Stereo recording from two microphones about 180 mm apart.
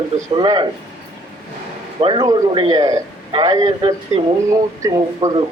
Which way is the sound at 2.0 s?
25° right (ahead or behind).